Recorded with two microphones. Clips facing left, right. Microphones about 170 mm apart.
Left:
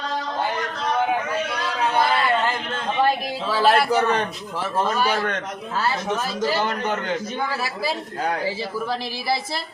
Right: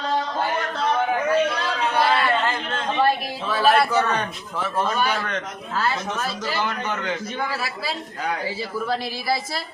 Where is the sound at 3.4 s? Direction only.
30° left (ahead or behind).